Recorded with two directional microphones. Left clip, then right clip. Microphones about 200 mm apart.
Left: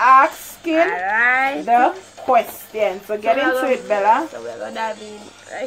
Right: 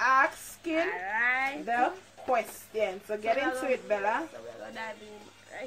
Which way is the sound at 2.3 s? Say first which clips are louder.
Left 13 dB; 20° right (ahead or behind).